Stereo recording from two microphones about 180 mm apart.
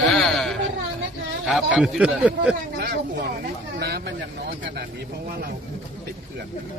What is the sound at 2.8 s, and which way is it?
Speech, 60° right (ahead or behind).